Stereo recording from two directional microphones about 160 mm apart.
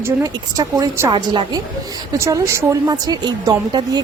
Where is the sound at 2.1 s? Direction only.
20° right (ahead or behind).